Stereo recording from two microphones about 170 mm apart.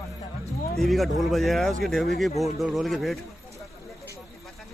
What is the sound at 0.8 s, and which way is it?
Speech, centre (ahead or behind).